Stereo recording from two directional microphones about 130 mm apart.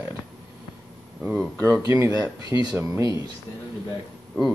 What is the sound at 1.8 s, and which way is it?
Speech, 25° right (ahead or behind).